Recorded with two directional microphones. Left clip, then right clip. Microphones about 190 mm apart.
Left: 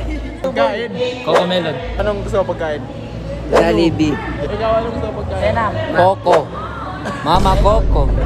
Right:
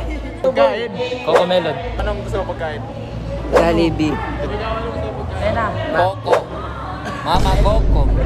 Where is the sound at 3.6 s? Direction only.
30° right (ahead or behind).